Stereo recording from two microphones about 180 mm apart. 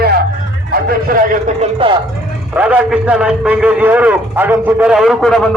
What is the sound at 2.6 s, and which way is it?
A man's voice, 5° right (ahead or behind).